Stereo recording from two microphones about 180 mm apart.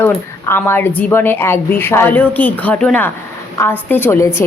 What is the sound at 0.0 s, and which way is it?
A woman's voice, 10° left (ahead or behind).